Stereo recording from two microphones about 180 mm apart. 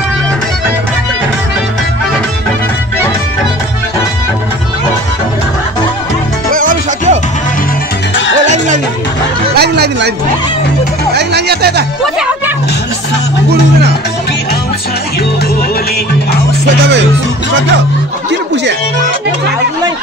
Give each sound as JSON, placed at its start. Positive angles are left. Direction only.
{"t": 6.5, "sound": "music", "side_deg": -50}
{"t": 9.6, "sound": "a sound", "side_deg": -65}
{"t": 11.1, "sound": "music", "side_deg": -65}